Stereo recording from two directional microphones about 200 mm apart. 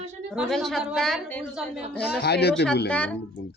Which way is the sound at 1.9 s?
55° left (ahead or behind).